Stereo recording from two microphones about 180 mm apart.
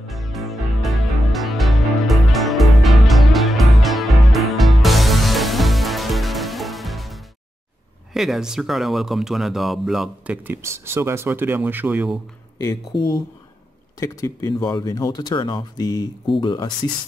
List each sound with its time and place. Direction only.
0.1 s music: centre (ahead or behind)
8.1 s speech: centre (ahead or behind)
12.6 s speech: 25° left (ahead or behind)